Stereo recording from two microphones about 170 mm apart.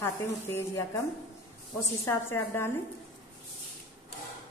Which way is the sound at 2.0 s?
15° left (ahead or behind).